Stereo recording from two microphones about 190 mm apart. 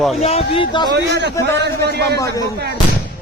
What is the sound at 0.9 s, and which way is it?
A man's voice, 65° right (ahead or behind).